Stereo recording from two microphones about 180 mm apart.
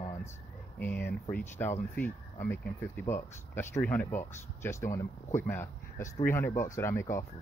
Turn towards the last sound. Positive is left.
turn(degrees=15)  # may be behind; listen again after turning